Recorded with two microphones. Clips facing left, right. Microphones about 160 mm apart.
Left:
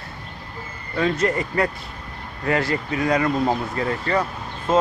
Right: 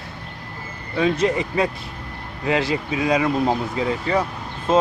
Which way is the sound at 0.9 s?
15° right (ahead or behind).